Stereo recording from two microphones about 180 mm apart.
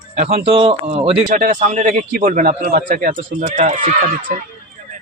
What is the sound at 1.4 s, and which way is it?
A man's voice, 45° right (ahead or behind).